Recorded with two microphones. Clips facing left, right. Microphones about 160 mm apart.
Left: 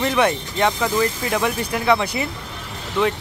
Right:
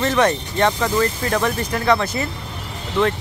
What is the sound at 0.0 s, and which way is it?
Speech, 10° left (ahead or behind).